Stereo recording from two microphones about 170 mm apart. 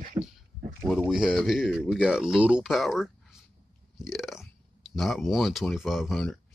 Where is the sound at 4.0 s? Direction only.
Centre (ahead or behind).